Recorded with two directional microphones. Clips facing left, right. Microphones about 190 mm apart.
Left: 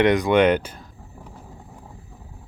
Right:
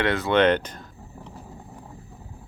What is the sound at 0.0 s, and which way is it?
Speech, 15° left (ahead or behind).